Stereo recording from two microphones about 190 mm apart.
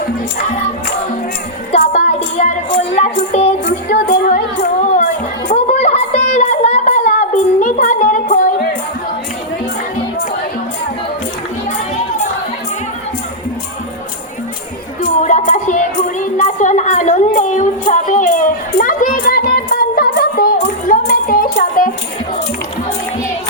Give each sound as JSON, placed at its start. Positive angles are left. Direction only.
{"t": 1.8, "sound": "speech", "side_deg": 40}
{"t": 3.7, "sound": "music", "side_deg": 45}
{"t": 5.5, "sound": "a sound", "side_deg": 35}
{"t": 7.6, "sound": "music", "side_deg": 40}
{"t": 15.0, "sound": "music", "side_deg": 40}